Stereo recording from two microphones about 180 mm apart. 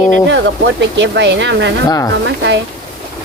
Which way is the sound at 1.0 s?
75° right (ahead or behind).